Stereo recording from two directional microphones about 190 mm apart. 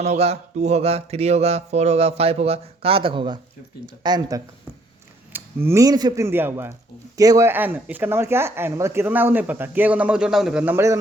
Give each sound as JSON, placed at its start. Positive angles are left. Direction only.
{"t": 0.0, "sound": "speech", "side_deg": -35}